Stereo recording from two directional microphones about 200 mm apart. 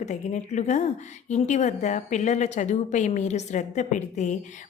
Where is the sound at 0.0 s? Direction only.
35° left (ahead or behind).